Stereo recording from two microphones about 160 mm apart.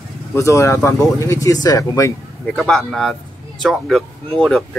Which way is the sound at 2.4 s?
Centre (ahead or behind).